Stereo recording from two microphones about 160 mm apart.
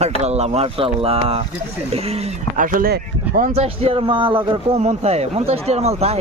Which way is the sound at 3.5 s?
40° right (ahead or behind).